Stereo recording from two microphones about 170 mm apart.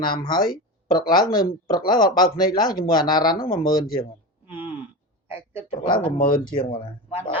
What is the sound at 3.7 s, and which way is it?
Speech, 60° left (ahead or behind).